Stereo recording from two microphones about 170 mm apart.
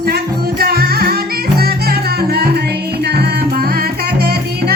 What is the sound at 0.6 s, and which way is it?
Music, 65° right (ahead or behind).